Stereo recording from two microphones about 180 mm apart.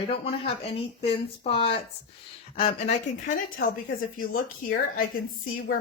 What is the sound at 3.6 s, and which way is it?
A woman's voice, 55° left (ahead or behind).